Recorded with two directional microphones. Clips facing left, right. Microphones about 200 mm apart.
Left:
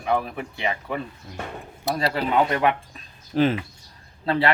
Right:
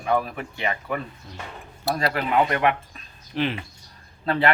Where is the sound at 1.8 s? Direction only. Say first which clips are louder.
Even; 25° left (ahead or behind).